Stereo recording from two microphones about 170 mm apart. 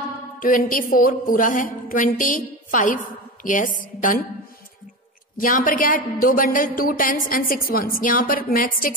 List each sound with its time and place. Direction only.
0.4 s a woman's voice: 55° left (ahead or behind)
5.4 s a woman's voice: 55° left (ahead or behind)